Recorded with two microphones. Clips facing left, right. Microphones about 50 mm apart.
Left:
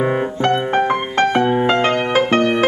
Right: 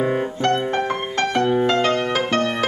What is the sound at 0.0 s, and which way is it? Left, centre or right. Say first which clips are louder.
Piano: left 3 dB; left.